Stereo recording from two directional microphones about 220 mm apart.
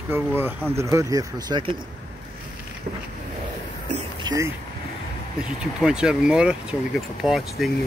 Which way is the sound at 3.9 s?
15° right (ahead or behind).